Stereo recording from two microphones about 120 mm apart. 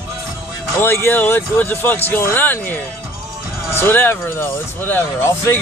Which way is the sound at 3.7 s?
15° left (ahead or behind).